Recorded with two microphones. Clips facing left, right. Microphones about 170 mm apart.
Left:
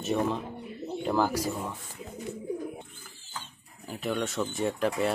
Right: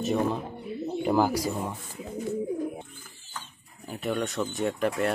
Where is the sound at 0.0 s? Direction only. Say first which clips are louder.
Right 2 dB; centre (ahead or behind).